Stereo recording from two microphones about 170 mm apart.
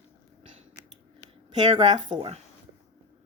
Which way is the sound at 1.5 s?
25° right (ahead or behind).